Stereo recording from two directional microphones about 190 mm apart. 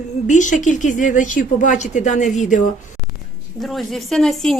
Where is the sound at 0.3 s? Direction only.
40° left (ahead or behind).